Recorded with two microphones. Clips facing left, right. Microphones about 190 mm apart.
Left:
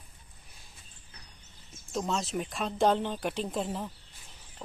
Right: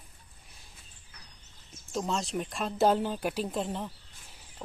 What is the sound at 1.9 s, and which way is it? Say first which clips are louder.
Speech: even; centre (ahead or behind).